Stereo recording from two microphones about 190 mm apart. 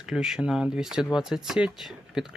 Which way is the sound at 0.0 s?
5° right (ahead or behind).